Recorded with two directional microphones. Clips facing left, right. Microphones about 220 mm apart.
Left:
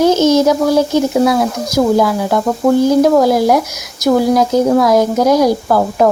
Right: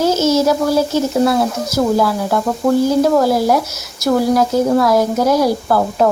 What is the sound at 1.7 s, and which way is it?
A woman's voice, 15° left (ahead or behind).